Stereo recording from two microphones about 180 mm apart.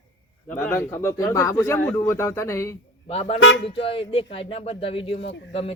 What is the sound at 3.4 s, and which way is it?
Speech, 90° left.